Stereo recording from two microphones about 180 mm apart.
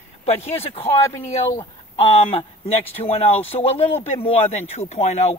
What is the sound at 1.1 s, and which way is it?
Speech, 15° left (ahead or behind).